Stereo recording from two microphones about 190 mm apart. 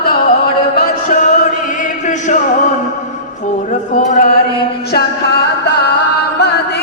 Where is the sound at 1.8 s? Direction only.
40° left (ahead or behind).